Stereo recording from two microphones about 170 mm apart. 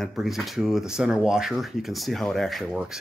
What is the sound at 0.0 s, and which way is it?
Speech, centre (ahead or behind).